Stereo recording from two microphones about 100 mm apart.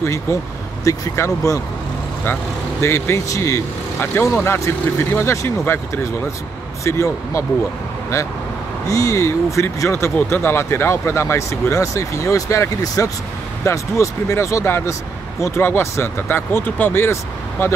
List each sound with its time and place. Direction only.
0.0 s speech: 30° left (ahead or behind)
2.8 s speech: 25° left (ahead or behind)
6.8 s speech: 30° left (ahead or behind)
8.8 s speech: 35° left (ahead or behind)